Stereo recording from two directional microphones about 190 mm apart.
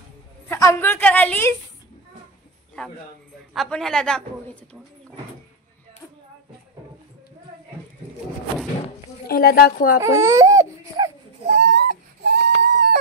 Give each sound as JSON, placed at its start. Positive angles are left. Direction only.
{"t": 0.5, "sound": "a sound", "side_deg": 15}
{"t": 2.8, "sound": "a man's voice", "side_deg": 5}
{"t": 9.3, "sound": "speech", "side_deg": 50}
{"t": 9.9, "sound": "speech", "side_deg": -15}
{"t": 11.4, "sound": "baby cry", "side_deg": -40}
{"t": 12.3, "sound": "whimper", "side_deg": -55}